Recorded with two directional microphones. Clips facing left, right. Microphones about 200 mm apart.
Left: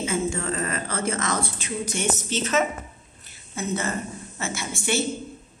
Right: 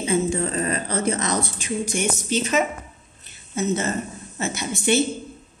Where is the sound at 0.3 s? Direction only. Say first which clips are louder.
Right 4 dB; 20° right (ahead or behind).